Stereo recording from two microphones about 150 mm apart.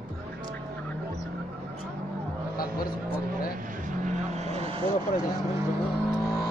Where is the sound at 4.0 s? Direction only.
50° right (ahead or behind).